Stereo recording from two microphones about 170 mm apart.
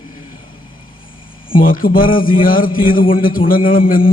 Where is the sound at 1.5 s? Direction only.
55° left (ahead or behind).